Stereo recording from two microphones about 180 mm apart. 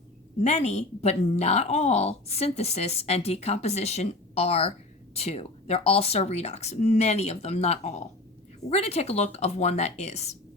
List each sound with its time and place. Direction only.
0.4 s speech: 40° left (ahead or behind)